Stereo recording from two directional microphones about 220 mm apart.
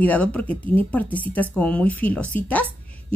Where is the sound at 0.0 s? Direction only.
5° left (ahead or behind).